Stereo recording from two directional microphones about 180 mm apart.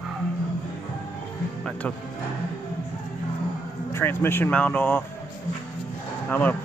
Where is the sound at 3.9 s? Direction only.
10° left (ahead or behind).